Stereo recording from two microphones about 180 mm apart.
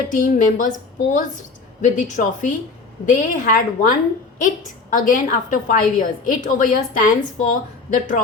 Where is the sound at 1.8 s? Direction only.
45° left (ahead or behind).